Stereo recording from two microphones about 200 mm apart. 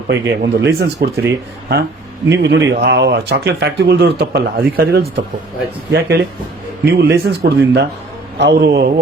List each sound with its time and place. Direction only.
0.1 s speech: 60° right (ahead or behind)
2.3 s speech: 60° right (ahead or behind)